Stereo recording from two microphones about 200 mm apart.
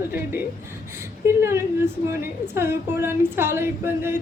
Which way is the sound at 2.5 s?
10° right (ahead or behind).